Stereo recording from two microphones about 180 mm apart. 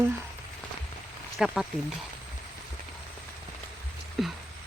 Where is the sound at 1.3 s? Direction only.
5° right (ahead or behind).